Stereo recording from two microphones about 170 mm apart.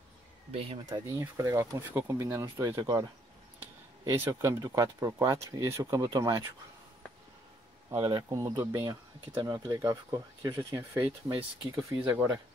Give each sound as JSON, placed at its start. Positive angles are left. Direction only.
{"t": 0.5, "sound": "speech", "side_deg": -35}
{"t": 0.8, "sound": "speech", "side_deg": -20}
{"t": 8.1, "sound": "speech", "side_deg": -25}